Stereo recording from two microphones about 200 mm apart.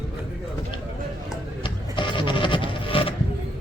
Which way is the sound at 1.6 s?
25° left (ahead or behind).